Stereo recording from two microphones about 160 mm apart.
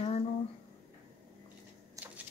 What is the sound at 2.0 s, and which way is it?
Shuffling cards, 20° right (ahead or behind).